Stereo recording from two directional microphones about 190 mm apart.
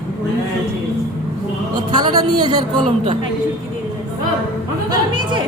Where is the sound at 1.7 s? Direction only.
20° right (ahead or behind).